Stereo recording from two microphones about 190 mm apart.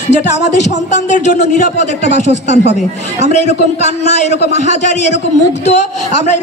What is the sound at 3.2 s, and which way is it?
A man's voice, 35° left (ahead or behind).